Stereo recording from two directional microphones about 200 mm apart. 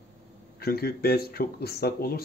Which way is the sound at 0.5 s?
50° left (ahead or behind).